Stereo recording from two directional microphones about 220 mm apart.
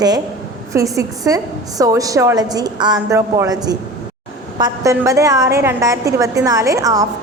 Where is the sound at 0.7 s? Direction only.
15° right (ahead or behind).